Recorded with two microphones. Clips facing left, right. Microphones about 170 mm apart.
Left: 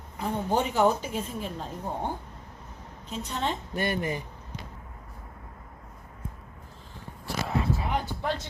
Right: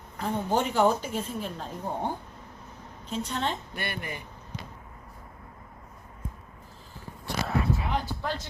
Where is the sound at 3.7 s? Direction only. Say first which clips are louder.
Left 7 dB; 40° left (ahead or behind).